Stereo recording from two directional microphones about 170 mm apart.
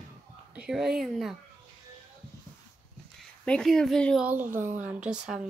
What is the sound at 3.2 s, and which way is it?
Speech, 5° left (ahead or behind).